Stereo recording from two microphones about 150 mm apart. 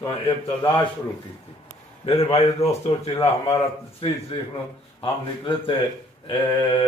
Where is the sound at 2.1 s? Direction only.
45° left (ahead or behind).